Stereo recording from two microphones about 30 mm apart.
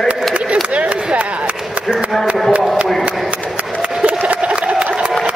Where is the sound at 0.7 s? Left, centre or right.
Right.